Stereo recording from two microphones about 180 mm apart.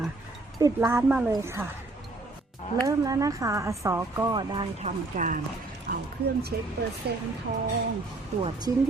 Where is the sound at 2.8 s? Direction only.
20° right (ahead or behind).